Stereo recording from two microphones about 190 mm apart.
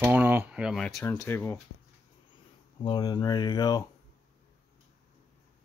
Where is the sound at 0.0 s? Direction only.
10° right (ahead or behind); by 1.6 s 10° left (ahead or behind).